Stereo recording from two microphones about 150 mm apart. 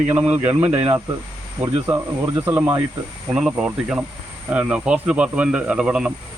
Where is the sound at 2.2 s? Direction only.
15° right (ahead or behind).